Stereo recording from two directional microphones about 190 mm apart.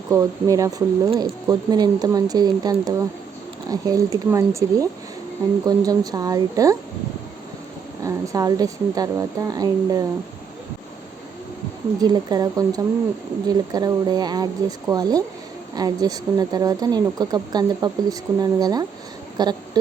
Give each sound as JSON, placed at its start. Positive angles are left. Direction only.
{"t": 0.1, "sound": "a woman's voice", "side_deg": -15}
{"t": 8.0, "sound": "a woman's voice", "side_deg": -15}
{"t": 11.9, "sound": "a woman's voice", "side_deg": -20}